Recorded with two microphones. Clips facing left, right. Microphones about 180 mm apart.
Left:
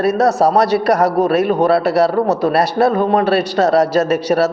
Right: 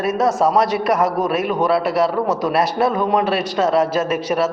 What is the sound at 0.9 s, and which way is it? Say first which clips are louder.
Speech: left 4 dB; 70° left (ahead or behind).